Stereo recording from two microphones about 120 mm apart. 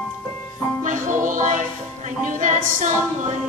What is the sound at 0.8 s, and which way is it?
Music, 90° right.